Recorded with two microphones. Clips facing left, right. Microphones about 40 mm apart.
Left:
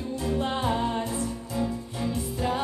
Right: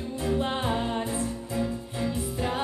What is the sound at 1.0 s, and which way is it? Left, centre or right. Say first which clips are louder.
Music: even; right.